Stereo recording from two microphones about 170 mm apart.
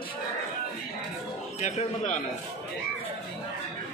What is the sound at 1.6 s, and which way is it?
Speech, 45° left (ahead or behind).